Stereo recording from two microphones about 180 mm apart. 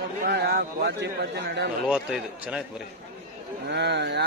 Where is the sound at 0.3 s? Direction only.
65° right (ahead or behind).